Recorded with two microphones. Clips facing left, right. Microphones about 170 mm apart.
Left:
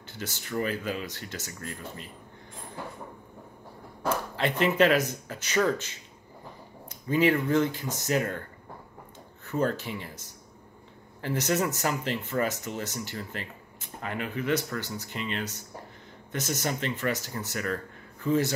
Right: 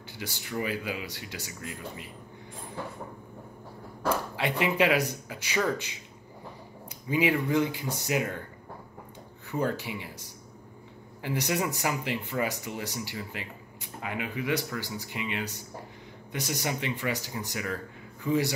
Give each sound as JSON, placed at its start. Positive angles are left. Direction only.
{"t": 0.1, "sound": "speech", "side_deg": -10}
{"t": 4.4, "sound": "speech", "side_deg": -10}
{"t": 7.1, "sound": "speech", "side_deg": -10}
{"t": 9.5, "sound": "speech", "side_deg": -15}
{"t": 11.2, "sound": "a man's voice", "side_deg": -15}